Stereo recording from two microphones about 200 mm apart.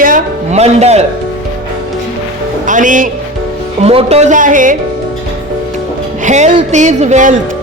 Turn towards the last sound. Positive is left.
turn(degrees=-35)  # may be behind; listen again after turning